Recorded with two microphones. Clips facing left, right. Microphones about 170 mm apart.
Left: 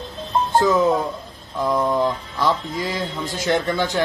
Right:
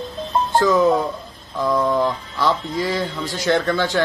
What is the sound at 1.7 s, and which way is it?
Speech, 20° left (ahead or behind).